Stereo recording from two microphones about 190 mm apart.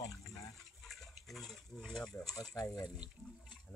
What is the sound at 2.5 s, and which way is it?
Speech, 20° left (ahead or behind).